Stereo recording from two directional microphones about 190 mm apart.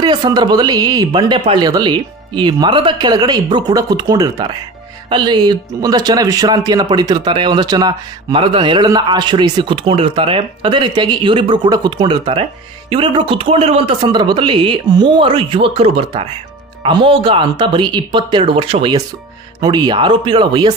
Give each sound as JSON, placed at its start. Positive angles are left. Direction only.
{"t": 0.0, "sound": "speech", "side_deg": -25}